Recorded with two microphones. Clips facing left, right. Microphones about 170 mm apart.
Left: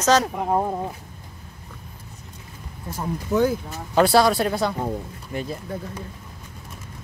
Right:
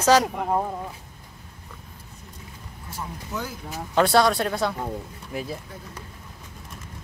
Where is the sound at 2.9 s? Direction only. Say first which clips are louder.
Left 10 dB; 50° left (ahead or behind).